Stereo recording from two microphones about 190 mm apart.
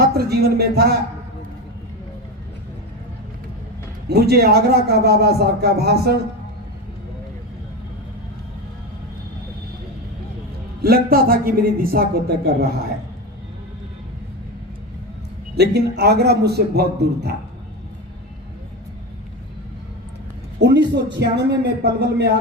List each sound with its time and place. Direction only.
0.1 s a man's voice: 55° right (ahead or behind)
4.1 s a man's voice: 55° right (ahead or behind)
10.8 s a man's voice: 50° right (ahead or behind)
15.5 s a man's voice: 60° right (ahead or behind)
20.6 s a man's voice: 65° right (ahead or behind)